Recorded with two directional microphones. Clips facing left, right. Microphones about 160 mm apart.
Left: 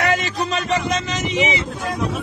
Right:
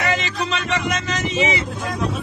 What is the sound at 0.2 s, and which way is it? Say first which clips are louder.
Music: left 2 dB; 40° left (ahead or behind).